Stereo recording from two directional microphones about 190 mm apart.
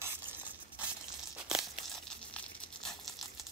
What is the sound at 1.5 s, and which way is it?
Crumpling, centre (ahead or behind).